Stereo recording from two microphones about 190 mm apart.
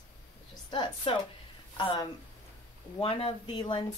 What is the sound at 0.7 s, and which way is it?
Speech, 25° left (ahead or behind).